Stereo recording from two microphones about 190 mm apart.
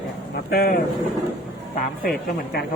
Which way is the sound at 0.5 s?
55° left (ahead or behind).